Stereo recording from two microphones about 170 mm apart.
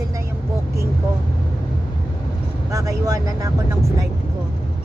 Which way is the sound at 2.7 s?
20° right (ahead or behind).